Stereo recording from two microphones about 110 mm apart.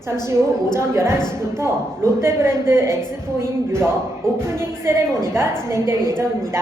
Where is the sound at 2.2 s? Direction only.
25° right (ahead or behind).